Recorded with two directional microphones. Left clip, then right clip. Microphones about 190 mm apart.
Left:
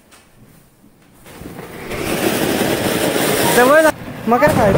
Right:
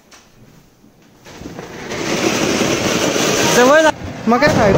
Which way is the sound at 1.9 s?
15° left (ahead or behind).